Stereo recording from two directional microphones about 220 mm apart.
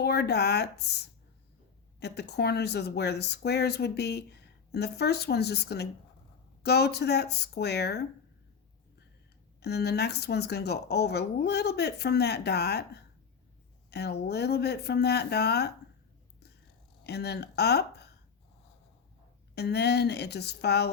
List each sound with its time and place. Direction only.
0.0 s speech: 50° left (ahead or behind)
2.0 s speech: 50° left (ahead or behind)
9.6 s speech: 50° left (ahead or behind)
17.0 s speech: 50° left (ahead or behind)
19.5 s speech: 50° left (ahead or behind)